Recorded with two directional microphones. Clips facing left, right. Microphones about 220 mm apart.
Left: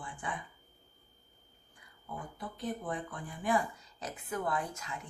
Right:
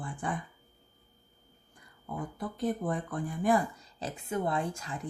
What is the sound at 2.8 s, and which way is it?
Speech, 45° right (ahead or behind).